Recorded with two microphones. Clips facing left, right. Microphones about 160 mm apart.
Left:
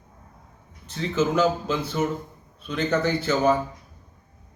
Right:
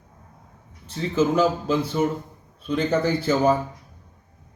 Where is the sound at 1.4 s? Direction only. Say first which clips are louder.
Right 2 dB; 35° right (ahead or behind).